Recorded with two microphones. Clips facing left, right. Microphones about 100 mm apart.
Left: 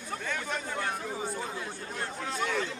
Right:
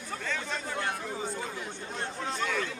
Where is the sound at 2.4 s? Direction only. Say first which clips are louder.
Left 2 dB; 25° left (ahead or behind).